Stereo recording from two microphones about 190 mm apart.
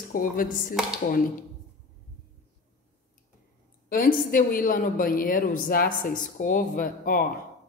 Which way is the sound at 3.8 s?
50° left (ahead or behind).